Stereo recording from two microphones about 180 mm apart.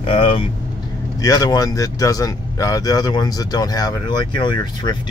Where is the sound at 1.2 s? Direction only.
20° left (ahead or behind).